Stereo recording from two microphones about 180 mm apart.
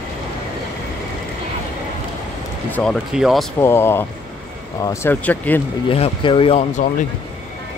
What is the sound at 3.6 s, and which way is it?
Speech, 15° left (ahead or behind).